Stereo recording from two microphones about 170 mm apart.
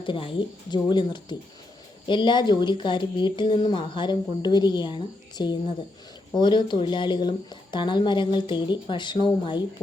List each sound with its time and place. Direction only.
0.0 s speech: 30° left (ahead or behind)